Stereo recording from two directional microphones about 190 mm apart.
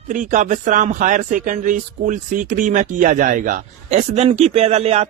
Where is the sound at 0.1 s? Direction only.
45° right (ahead or behind).